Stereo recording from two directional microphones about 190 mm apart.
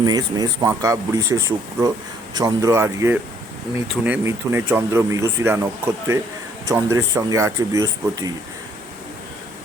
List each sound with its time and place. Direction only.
0.0 s speech: 20° right (ahead or behind)